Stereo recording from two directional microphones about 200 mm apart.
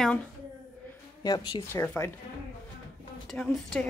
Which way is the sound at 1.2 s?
20° left (ahead or behind).